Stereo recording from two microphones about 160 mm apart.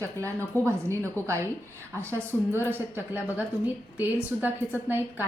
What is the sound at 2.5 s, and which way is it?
A woman's voice, 10° right (ahead or behind).